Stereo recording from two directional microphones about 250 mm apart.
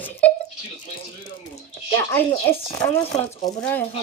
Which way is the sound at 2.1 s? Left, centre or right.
Centre.